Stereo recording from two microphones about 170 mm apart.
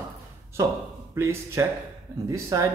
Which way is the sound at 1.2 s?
15° right (ahead or behind).